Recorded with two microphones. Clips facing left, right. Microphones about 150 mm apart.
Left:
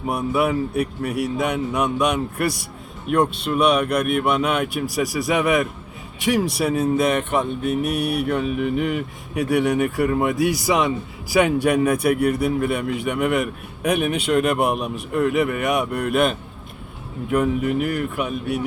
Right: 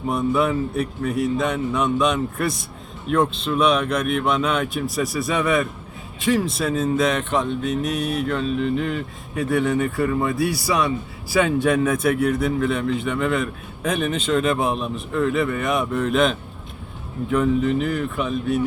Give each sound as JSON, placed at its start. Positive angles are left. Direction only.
{"t": 0.1, "sound": "a man's voice", "side_deg": 10}